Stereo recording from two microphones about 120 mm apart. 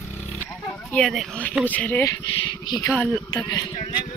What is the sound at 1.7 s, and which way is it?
Speech, 15° left (ahead or behind).